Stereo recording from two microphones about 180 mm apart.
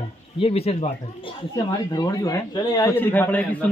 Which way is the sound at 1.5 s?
20° left (ahead or behind).